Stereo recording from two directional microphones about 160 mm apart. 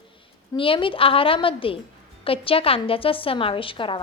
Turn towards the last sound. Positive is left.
turn(degrees=30)  # may be behind; listen again after turning